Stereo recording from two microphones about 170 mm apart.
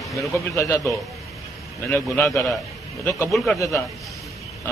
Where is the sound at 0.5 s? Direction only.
15° left (ahead or behind).